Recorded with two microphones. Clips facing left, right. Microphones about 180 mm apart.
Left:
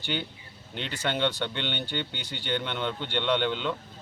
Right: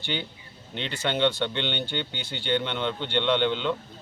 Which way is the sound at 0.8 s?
5° left (ahead or behind).